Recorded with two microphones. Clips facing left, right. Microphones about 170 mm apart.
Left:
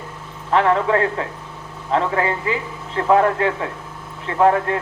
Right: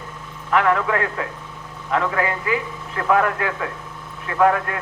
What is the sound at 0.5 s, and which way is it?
Speech, 30° left (ahead or behind).